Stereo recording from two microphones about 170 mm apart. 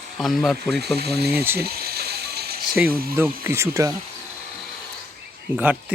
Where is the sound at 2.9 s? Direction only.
60° right (ahead or behind).